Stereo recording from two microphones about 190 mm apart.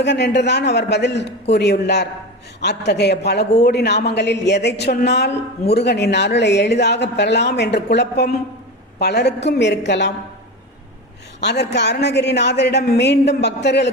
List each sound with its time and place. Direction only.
0.0 s a man's voice: 65° left (ahead or behind)
11.3 s a man's voice: 60° left (ahead or behind)